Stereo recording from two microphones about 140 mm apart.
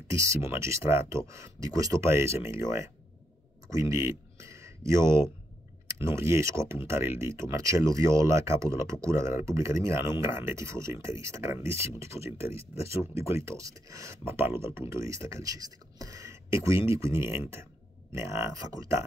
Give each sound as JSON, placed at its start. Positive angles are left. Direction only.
{"t": 0.1, "sound": "speech", "side_deg": -20}